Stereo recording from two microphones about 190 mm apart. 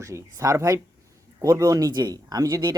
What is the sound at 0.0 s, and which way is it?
Speech, 15° right (ahead or behind).